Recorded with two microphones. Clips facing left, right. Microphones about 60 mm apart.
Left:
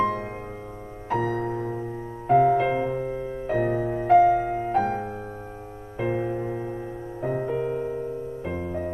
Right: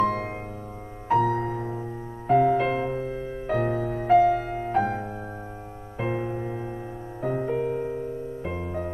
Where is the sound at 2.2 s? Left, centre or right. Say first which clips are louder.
Left 1 dB; centre.